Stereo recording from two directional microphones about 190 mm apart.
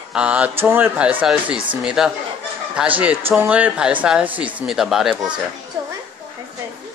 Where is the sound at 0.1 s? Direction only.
5° right (ahead or behind).